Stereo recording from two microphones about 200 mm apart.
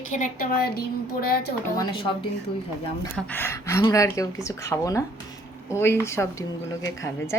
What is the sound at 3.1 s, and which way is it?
Speech, 10° left (ahead or behind).